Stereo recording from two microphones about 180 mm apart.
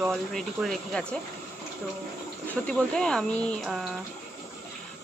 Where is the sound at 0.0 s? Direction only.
Centre (ahead or behind).